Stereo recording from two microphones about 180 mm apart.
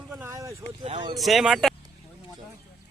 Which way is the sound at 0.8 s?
30° right (ahead or behind).